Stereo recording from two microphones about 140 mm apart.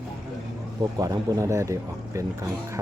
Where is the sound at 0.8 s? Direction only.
25° right (ahead or behind).